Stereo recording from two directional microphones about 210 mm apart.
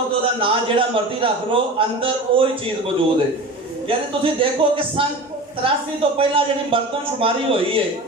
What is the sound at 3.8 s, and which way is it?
A man's voice, 25° right (ahead or behind).